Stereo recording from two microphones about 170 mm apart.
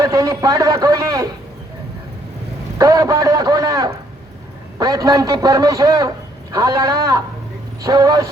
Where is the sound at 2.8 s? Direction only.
20° right (ahead or behind).